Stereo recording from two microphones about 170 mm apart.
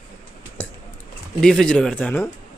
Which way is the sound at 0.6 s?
10° left (ahead or behind).